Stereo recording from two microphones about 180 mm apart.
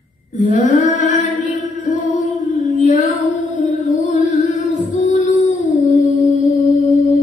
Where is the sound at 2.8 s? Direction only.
40° left (ahead or behind).